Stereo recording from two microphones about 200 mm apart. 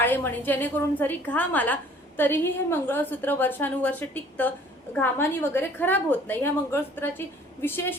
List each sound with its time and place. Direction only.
0.0 s a woman's voice: 10° left (ahead or behind)